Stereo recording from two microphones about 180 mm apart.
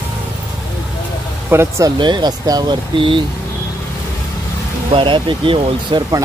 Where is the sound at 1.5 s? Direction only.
15° right (ahead or behind).